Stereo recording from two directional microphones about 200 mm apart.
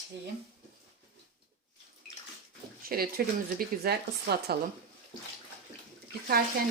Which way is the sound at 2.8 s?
50° right (ahead or behind).